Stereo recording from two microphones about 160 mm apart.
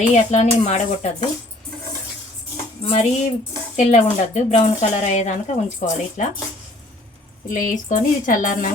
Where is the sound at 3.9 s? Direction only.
45° left (ahead or behind).